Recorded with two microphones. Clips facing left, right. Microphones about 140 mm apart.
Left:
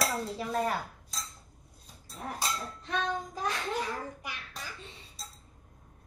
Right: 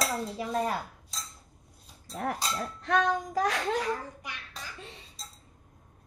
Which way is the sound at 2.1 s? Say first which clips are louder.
Right 7 dB; 75° right (ahead or behind).